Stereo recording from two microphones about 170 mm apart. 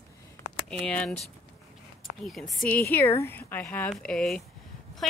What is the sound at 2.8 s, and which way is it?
Speech, 15° left (ahead or behind).